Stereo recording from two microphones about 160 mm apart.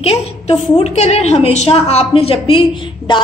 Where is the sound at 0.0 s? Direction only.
40° left (ahead or behind).